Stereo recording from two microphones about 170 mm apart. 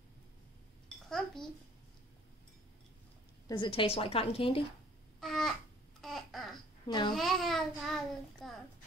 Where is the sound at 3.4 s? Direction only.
30° left (ahead or behind).